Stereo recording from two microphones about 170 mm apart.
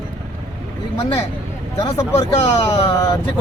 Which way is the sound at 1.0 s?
35° left (ahead or behind).